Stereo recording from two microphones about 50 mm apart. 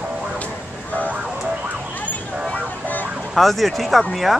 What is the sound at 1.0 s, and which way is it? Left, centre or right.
Vehicle, right.